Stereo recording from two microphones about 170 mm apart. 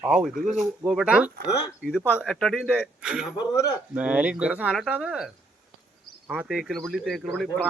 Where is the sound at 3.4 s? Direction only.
20° left (ahead or behind).